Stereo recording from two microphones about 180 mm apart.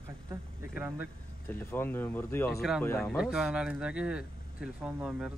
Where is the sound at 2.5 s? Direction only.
Centre (ahead or behind).